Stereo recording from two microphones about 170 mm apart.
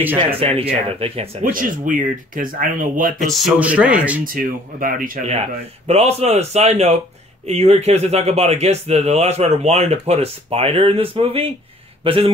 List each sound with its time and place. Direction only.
0.4 s speech: 35° right (ahead or behind)
1.4 s speech: 55° right (ahead or behind)
3.2 s speech: centre (ahead or behind)
4.2 s speech: 55° right (ahead or behind)
5.3 s speech: 40° right (ahead or behind)